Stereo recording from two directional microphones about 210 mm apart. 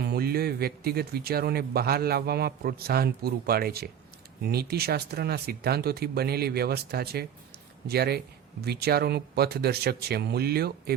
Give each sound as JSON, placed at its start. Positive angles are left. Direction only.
{"t": 0.0, "sound": "speech", "side_deg": -50}